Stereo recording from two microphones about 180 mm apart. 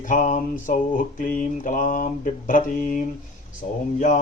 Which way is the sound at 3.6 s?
40° left (ahead or behind).